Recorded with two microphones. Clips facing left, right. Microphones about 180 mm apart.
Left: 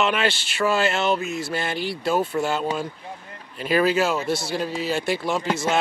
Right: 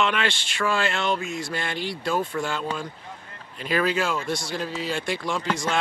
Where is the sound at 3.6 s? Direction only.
5° left (ahead or behind).